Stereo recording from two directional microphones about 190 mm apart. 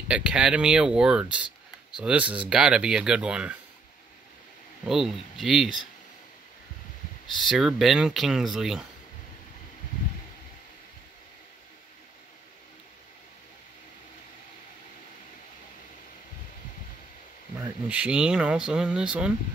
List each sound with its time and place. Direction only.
0.1 s speech: 5° right (ahead or behind)
4.8 s speech: centre (ahead or behind)
7.4 s speech: centre (ahead or behind)
17.6 s speech: 5° right (ahead or behind)